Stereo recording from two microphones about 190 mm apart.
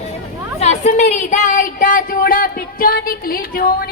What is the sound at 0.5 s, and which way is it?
Speech, 35° left (ahead or behind).